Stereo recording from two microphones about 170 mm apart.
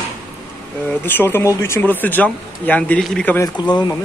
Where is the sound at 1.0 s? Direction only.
15° left (ahead or behind).